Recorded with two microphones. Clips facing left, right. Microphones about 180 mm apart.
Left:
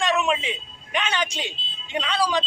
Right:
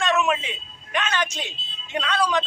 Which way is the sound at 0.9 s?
10° left (ahead or behind).